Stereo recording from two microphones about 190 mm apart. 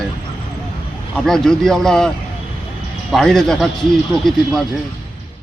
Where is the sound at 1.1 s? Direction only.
Centre (ahead or behind).